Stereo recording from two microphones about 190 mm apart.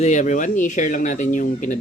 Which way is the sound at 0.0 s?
35° left (ahead or behind).